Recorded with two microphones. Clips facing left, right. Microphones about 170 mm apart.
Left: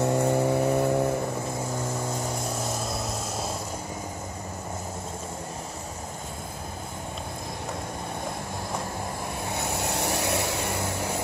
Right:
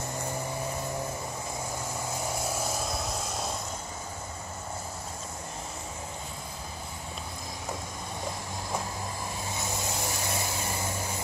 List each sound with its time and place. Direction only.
0.0 s vehicle: 70° left (ahead or behind)
2.6 s vehicle: centre (ahead or behind)
9.5 s vehicle: 65° left (ahead or behind)